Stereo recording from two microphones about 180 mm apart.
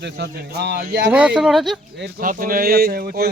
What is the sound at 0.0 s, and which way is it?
Speech, 65° right (ahead or behind).